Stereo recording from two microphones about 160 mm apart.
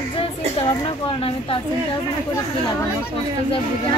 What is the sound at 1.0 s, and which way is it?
Speech, 35° left (ahead or behind).